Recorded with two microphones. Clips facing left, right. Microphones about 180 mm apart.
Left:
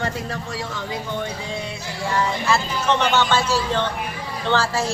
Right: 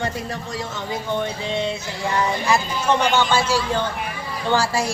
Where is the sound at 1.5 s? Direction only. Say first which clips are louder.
Right 6 dB; 25° right (ahead or behind).